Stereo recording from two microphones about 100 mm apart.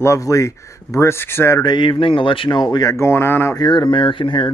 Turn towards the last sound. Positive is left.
turn(degrees=55)  # may be behind; listen again after turning